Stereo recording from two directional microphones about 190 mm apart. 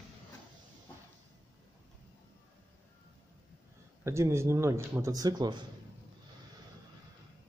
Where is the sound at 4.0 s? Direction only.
15° right (ahead or behind).